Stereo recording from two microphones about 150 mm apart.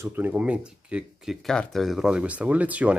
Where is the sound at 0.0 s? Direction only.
15° right (ahead or behind).